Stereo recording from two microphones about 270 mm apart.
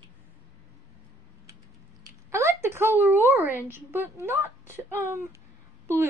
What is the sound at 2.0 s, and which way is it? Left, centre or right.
A woman's voice, centre.